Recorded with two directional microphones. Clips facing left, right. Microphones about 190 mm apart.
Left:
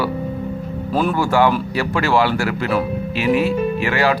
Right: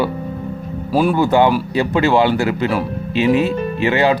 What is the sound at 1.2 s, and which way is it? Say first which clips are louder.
Speech: right 1 dB; 20° right (ahead or behind).